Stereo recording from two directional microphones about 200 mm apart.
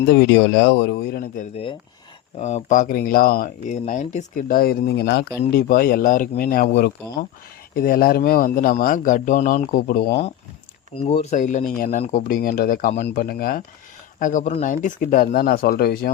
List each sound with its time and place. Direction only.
0.1 s speech: 55° left (ahead or behind)
2.4 s speech: 35° left (ahead or behind)
3.7 s speech: 35° left (ahead or behind)
10.9 s speech: 30° left (ahead or behind); by 12.9 s 45° left (ahead or behind)
12.9 s speech: 30° left (ahead or behind)
13.1 s speech: 50° left (ahead or behind)